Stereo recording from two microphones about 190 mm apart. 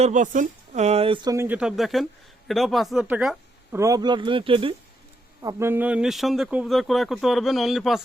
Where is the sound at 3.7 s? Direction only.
15° right (ahead or behind).